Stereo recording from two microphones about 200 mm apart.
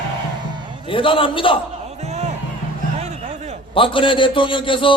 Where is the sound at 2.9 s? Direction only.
35° right (ahead or behind).